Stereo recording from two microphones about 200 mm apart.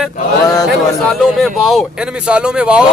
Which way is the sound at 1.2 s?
Centre (ahead or behind).